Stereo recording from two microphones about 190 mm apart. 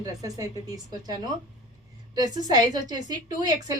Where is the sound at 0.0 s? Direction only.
20° right (ahead or behind).